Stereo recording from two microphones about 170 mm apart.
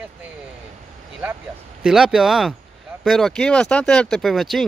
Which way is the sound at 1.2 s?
10° right (ahead or behind).